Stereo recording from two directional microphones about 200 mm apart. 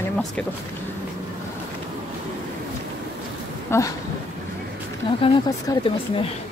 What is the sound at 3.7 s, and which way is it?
Speech, 15° left (ahead or behind).